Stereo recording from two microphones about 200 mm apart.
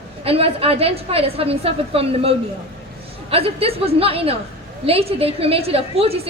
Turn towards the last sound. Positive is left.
turn(degrees=-30)  # may be behind; listen again after turning